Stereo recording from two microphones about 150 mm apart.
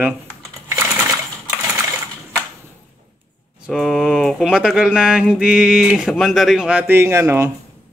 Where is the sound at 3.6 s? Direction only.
Centre (ahead or behind); by 7.5 s 15° right (ahead or behind).